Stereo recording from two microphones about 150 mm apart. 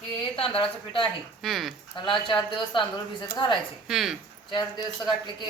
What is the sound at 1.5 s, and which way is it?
Speech, centre (ahead or behind).